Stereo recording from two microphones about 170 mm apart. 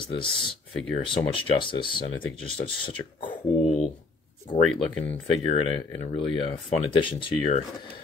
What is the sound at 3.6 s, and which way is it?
Speech, 40° left (ahead or behind).